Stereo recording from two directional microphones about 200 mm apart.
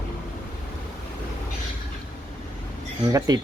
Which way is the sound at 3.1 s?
20° right (ahead or behind).